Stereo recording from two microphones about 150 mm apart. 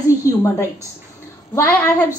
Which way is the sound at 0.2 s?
20° left (ahead or behind).